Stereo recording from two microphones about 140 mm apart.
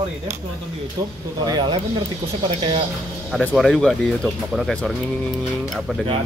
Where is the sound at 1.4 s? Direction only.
30° right (ahead or behind).